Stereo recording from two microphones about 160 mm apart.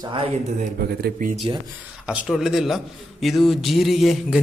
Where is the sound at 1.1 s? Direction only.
50° right (ahead or behind).